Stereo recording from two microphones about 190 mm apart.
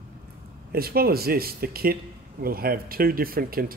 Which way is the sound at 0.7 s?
55° right (ahead or behind).